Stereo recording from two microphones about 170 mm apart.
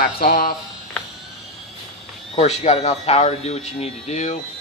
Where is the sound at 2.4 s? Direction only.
40° left (ahead or behind).